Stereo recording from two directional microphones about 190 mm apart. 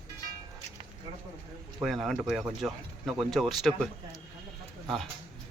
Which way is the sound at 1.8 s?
Centre (ahead or behind).